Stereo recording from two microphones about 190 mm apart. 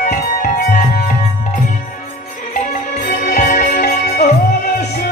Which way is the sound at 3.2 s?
45° left (ahead or behind).